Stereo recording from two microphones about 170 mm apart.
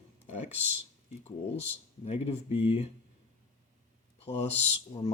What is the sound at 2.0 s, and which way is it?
Speech, 35° left (ahead or behind).